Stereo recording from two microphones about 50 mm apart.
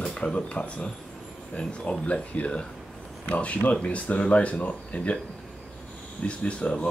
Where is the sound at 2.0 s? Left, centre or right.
Left.